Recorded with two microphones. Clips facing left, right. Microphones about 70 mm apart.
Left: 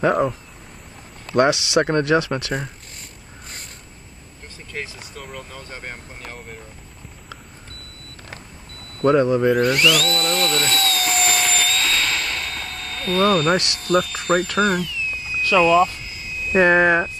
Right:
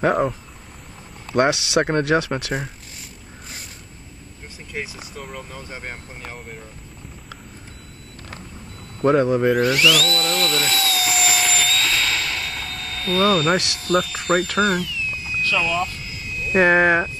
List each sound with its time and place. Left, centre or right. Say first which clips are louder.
0.1 s speech: left 1 dB; centre
1.8 s speech: left 1 dB; centre
2.0 s speech: left 1 dB; right
4.7 s speech: right 1 dB; centre
9.0 s speech: left 1 dB; centre
9.5 s a sound: even; centre
15.5 s speech: left 9 dB; left
15.8 s vehicle: left 7 dB; centre
16.6 s speech: even; right